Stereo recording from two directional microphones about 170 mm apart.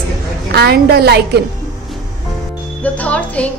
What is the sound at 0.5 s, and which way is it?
Speech, 70° right (ahead or behind).